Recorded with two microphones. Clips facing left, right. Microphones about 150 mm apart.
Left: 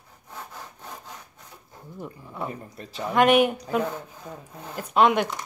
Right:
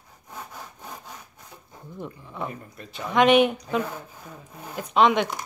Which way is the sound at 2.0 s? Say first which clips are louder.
Even; 10° left (ahead or behind).